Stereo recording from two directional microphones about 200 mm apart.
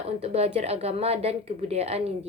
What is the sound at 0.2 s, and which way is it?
A woman's voice, 30° right (ahead or behind).